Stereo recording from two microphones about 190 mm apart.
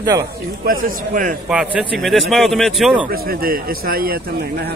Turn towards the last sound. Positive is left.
turn(degrees=-50)  # may be behind; listen again after turning